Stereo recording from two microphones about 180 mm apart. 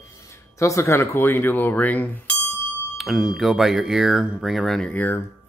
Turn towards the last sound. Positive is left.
turn(degrees=10)  # may be behind; listen again after turning